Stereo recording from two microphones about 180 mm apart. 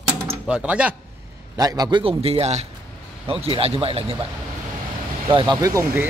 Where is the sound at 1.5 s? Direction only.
20° right (ahead or behind).